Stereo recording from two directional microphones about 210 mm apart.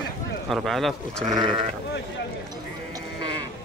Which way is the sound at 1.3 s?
20° right (ahead or behind).